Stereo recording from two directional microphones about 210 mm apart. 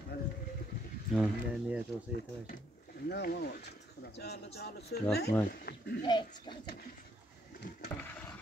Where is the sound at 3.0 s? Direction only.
50° left (ahead or behind).